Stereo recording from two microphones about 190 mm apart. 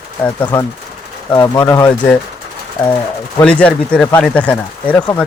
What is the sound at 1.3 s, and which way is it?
Speech, 20° left (ahead or behind).